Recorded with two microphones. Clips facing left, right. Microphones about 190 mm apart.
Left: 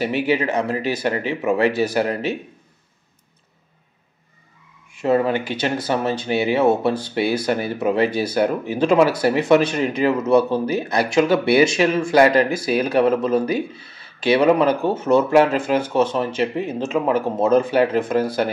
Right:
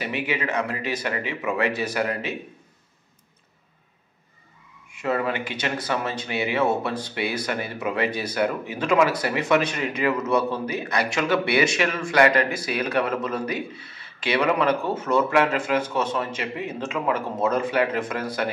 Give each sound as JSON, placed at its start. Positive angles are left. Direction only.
{"t": 0.0, "sound": "speech", "side_deg": 35}
{"t": 5.0, "sound": "speech", "side_deg": 30}